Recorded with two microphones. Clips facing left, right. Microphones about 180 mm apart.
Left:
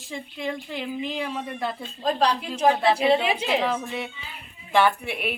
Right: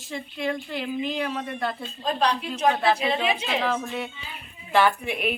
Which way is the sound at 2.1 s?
35° left (ahead or behind).